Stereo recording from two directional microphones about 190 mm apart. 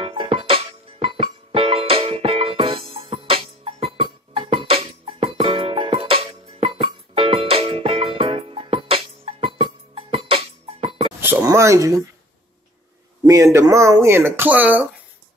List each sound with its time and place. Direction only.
0.0 s music: 30° right (ahead or behind)
11.1 s a sound: 15° right (ahead or behind)
13.2 s speech: 15° right (ahead or behind)